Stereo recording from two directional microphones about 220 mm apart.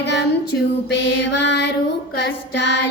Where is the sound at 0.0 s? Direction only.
50° left (ahead or behind).